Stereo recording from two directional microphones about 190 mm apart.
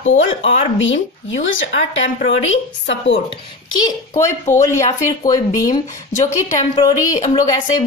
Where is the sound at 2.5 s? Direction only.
65° left (ahead or behind).